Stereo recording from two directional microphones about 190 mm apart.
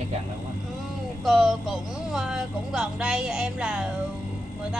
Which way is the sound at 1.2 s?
Centre (ahead or behind).